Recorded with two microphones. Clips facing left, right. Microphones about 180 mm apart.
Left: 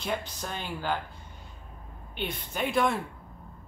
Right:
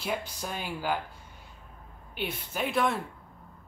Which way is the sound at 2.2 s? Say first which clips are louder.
Left 1 dB; 5° right (ahead or behind).